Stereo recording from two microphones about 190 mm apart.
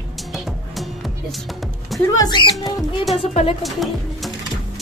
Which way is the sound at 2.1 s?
20° left (ahead or behind).